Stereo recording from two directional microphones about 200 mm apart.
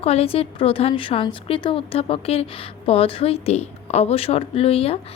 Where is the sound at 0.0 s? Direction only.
30° left (ahead or behind).